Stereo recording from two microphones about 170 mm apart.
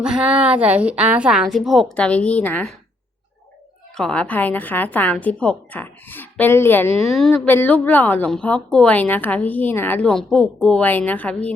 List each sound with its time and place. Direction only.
0.0 s a woman's voice: 5° right (ahead or behind)
3.9 s a woman's voice: 5° left (ahead or behind)
6.9 s a woman's voice: 35° right (ahead or behind)
7.2 s a woman's voice: 5° left (ahead or behind)